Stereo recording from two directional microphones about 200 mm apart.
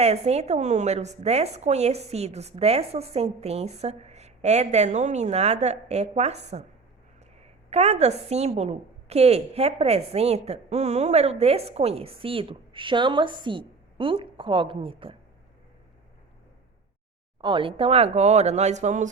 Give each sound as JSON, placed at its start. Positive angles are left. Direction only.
{"t": 0.0, "sound": "a woman's voice", "side_deg": -30}
{"t": 7.7, "sound": "a woman's voice", "side_deg": -30}
{"t": 17.4, "sound": "a woman's voice", "side_deg": -25}